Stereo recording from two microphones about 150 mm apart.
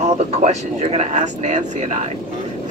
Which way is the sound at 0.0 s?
50° right (ahead or behind).